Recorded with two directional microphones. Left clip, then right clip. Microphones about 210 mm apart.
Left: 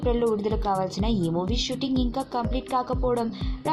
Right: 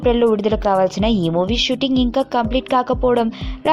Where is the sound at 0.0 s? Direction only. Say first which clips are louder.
Right 9 dB; 40° right (ahead or behind).